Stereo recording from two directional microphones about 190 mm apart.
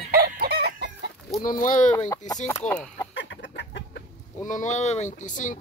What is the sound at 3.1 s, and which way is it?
Chicken, 75° left (ahead or behind).